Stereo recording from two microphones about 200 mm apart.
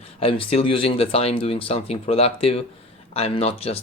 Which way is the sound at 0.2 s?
25° left (ahead or behind).